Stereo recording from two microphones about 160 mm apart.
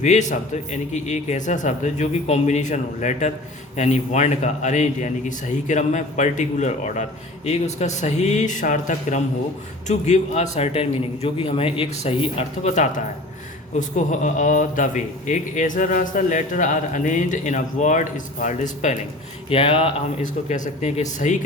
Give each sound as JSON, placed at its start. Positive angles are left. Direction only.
{"t": 0.0, "sound": "a man's voice", "side_deg": 50}
{"t": 19.5, "sound": "a man's voice", "side_deg": 35}
{"t": 20.2, "sound": "speech", "side_deg": 45}